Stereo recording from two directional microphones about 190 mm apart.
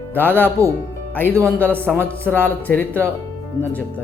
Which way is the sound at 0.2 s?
10° left (ahead or behind).